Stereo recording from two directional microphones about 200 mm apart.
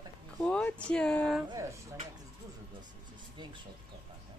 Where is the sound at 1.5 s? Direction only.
15° right (ahead or behind).